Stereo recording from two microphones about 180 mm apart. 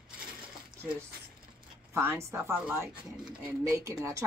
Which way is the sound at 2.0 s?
10° right (ahead or behind).